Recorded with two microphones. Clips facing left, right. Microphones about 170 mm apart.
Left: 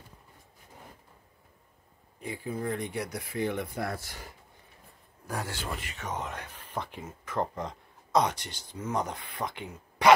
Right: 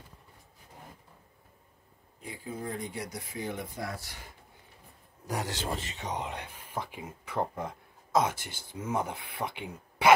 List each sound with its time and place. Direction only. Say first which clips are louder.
2.2 s speech: left 5 dB; 65° left (ahead or behind)
5.2 s speech: right 2 dB; 20° right (ahead or behind)